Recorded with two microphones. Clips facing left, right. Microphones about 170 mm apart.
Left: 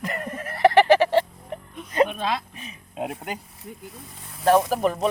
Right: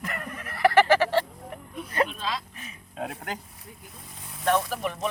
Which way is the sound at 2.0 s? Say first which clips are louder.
Left 6 dB; 60° left (ahead or behind).